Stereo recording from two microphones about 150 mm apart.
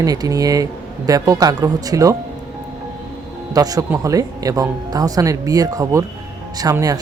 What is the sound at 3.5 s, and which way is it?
Speech, 25° right (ahead or behind).